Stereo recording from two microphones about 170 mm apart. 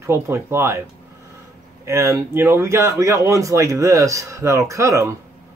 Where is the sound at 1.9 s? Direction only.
15° right (ahead or behind).